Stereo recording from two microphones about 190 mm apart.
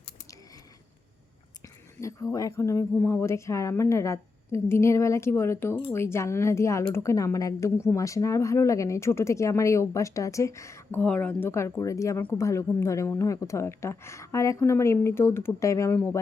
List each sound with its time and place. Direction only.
2.0 s speech: 15° left (ahead or behind)